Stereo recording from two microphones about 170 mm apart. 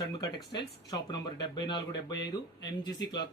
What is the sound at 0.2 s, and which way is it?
Speech, 20° left (ahead or behind).